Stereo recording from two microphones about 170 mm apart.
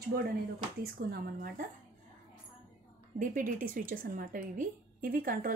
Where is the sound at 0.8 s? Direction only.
60° right (ahead or behind).